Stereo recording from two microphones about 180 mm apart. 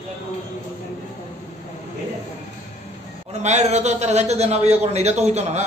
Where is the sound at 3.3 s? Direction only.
40° right (ahead or behind).